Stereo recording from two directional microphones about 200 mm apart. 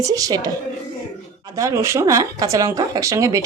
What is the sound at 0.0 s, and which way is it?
Speech, 15° right (ahead or behind).